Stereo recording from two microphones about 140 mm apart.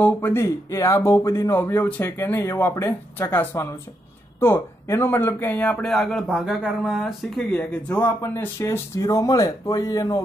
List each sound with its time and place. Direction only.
0.0 s speech: 15° left (ahead or behind)